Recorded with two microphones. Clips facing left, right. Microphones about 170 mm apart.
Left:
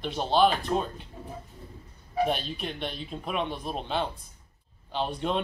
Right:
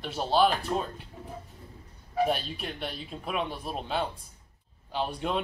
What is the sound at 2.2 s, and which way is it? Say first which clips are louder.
Speech: even; 5° right (ahead or behind).